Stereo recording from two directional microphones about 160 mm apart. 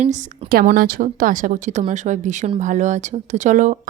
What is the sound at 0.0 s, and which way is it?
Speech, 50° right (ahead or behind).